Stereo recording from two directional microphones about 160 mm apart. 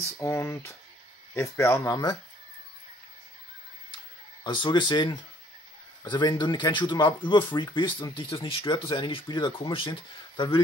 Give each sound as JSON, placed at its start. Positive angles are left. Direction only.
{"t": 0.2, "sound": "speech", "side_deg": 15}
{"t": 4.4, "sound": "speech", "side_deg": 30}